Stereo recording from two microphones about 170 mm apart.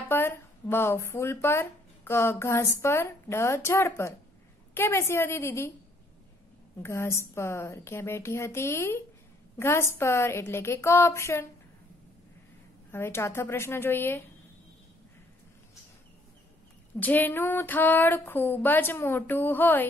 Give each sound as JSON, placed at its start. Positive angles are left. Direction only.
{"t": 0.1, "sound": "speech", "side_deg": 15}
{"t": 6.8, "sound": "speech", "side_deg": 15}
{"t": 12.9, "sound": "speech", "side_deg": 15}
{"t": 17.0, "sound": "speech", "side_deg": 10}